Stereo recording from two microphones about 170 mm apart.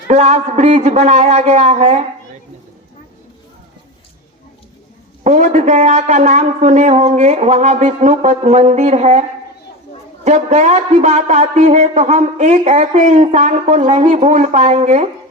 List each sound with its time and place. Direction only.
0.1 s a man's voice: 40° right (ahead or behind)
5.2 s a man's voice: 45° right (ahead or behind)
10.2 s a man's voice: 45° right (ahead or behind)